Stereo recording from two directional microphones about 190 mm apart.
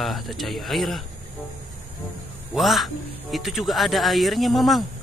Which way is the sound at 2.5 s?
Centre (ahead or behind).